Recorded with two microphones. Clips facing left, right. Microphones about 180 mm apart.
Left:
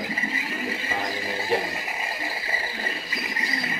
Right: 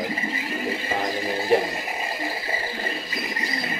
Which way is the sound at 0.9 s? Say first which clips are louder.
Right 4 dB; 25° right (ahead or behind).